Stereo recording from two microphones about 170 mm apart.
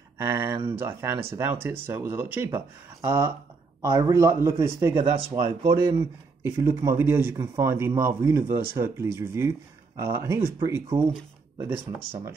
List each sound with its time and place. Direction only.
0.2 s speech: 15° right (ahead or behind)